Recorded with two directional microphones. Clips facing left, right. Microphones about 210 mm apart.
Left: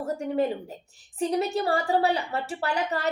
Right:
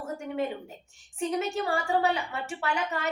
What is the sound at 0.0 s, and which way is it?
A woman's voice, 35° left (ahead or behind).